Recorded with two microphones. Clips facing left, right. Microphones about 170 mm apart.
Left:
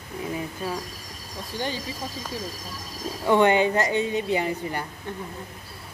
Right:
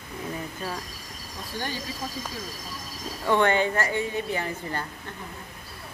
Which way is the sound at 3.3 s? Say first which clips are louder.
Left 3 dB; 15° left (ahead or behind).